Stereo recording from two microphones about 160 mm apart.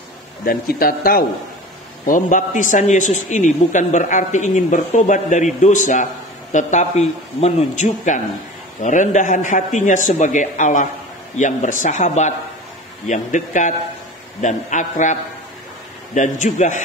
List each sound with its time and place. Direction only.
0.5 s speech: 65° left (ahead or behind)
2.0 s a man's voice: 55° left (ahead or behind)
16.2 s a man's voice: 50° left (ahead or behind)